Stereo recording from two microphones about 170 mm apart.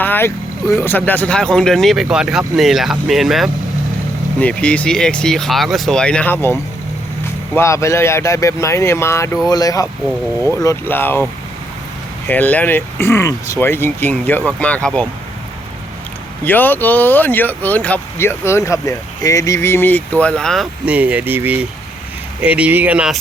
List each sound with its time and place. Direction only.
0.0 s vehicle: 10° left (ahead or behind)
0.8 s speech: 10° left (ahead or behind)
12.3 s speech: 10° left (ahead or behind)
16.4 s speech: 10° left (ahead or behind)
20.8 s speech: 10° right (ahead or behind)